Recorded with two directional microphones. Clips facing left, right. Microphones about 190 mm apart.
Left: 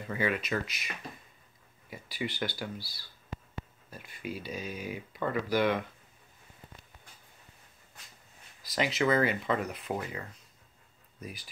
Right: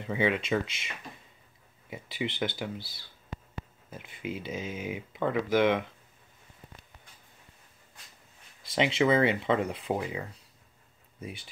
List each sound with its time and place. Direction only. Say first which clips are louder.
0.0 s speech: right 3 dB; 25° right (ahead or behind)
8.6 s speech: right 3 dB; 25° right (ahead or behind)
9.9 s speech: right 4 dB; 15° right (ahead or behind)
11.1 s speech: right 3 dB; 25° right (ahead or behind)